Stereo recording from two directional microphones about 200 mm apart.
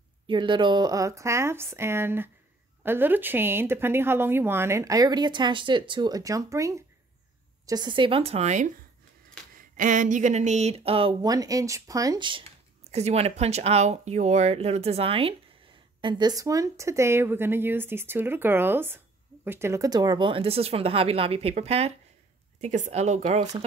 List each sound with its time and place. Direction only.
0.3 s speech: 25° right (ahead or behind)